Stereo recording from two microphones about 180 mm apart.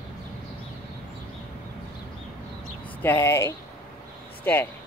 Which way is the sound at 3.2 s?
15° left (ahead or behind).